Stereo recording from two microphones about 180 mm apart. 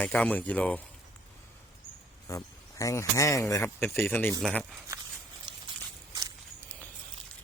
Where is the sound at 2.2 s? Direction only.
20° left (ahead or behind).